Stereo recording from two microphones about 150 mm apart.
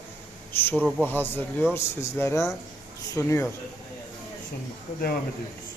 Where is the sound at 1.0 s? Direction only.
15° left (ahead or behind).